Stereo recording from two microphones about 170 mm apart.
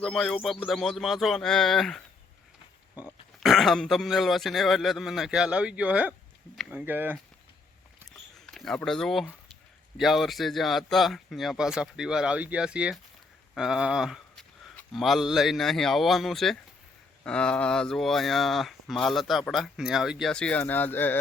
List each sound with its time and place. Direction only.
0.0 s speech: centre (ahead or behind)
2.9 s pig: 20° left (ahead or behind)
3.4 s speech: centre (ahead or behind)
8.1 s a sound: centre (ahead or behind)
10.0 s speech: centre (ahead or behind)